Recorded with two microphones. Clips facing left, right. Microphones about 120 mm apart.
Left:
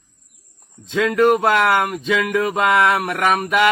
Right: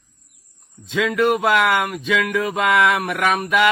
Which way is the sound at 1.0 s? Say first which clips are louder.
Left 3 dB; 40° left (ahead or behind).